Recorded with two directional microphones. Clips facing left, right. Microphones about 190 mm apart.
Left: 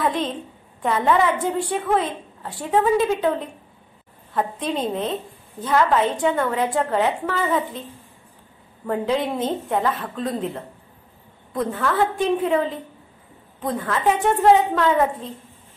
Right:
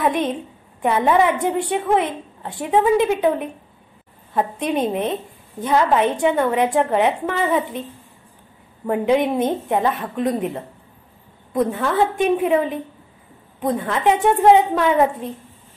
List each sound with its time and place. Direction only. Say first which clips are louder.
0.0 s a woman's voice: right 3 dB; 15° right (ahead or behind)
8.8 s a woman's voice: right 5 dB; 15° right (ahead or behind)